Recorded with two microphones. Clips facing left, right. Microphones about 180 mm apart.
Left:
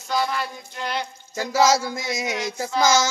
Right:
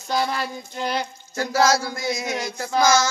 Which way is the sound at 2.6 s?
20° left (ahead or behind).